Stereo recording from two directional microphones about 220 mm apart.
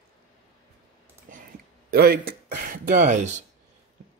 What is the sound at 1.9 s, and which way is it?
Speech, 45° right (ahead or behind).